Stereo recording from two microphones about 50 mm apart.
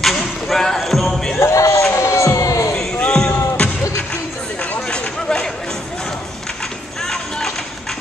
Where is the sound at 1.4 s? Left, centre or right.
Left.